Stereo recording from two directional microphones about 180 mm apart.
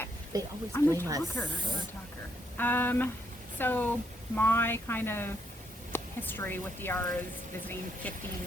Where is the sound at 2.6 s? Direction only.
10° left (ahead or behind).